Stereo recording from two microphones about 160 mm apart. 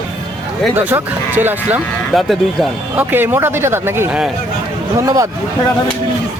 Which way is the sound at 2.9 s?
15° right (ahead or behind).